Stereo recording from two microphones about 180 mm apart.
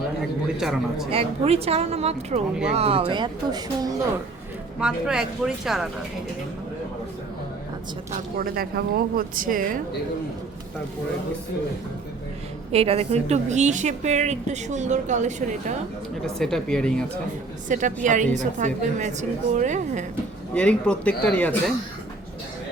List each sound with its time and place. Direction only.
0.2 s a man's voice: 5° right (ahead or behind)
1.1 s a woman's voice: 35° right (ahead or behind)
4.8 s speech: 5° right (ahead or behind)
8.1 s speech: 55° right (ahead or behind)
12.7 s a woman's voice: 35° right (ahead or behind)
16.2 s speech: 5° left (ahead or behind)
17.7 s speech: 45° right (ahead or behind)
20.5 s a man's voice: 5° left (ahead or behind)